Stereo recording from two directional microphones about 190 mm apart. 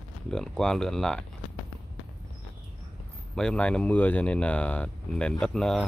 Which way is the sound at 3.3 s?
5° left (ahead or behind).